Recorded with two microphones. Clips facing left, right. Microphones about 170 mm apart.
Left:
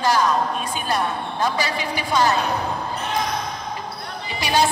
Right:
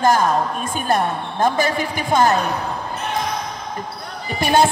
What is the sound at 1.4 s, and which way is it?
Speech, 50° right (ahead or behind).